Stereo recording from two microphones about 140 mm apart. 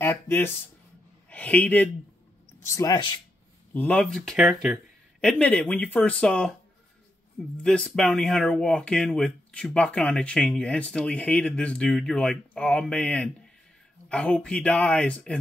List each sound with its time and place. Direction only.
0.0 s a sound: 15° left (ahead or behind)
1.3 s a man's voice: 10° left (ahead or behind)
2.7 s speech: 25° left (ahead or behind)
3.7 s speech: 10° left (ahead or behind)
5.2 s speech: 10° left (ahead or behind)
7.6 s speech: 5° left (ahead or behind)